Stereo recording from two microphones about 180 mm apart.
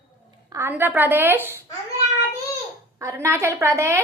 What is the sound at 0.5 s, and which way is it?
A woman's voice, 15° right (ahead or behind).